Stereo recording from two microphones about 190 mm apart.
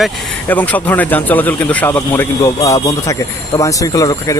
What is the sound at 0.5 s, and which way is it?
Speech, 10° left (ahead or behind).